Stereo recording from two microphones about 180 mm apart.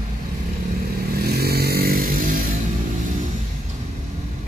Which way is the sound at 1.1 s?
60° right (ahead or behind).